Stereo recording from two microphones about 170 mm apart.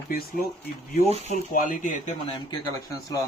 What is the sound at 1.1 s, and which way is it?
Speech, 45° left (ahead or behind).